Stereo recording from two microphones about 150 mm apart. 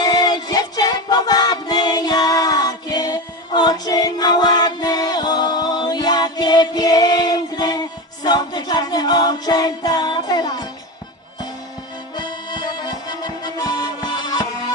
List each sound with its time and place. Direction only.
0.0 s music: 25° left (ahead or behind)
12.1 s accordion: 30° left (ahead or behind)